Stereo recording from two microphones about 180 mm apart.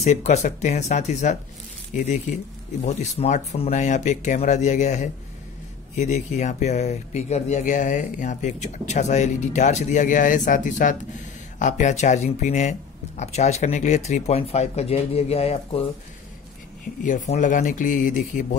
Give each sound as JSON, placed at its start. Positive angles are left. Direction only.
{"t": 0.0, "sound": "speech", "side_deg": 40}
{"t": 17.0, "sound": "speech", "side_deg": 45}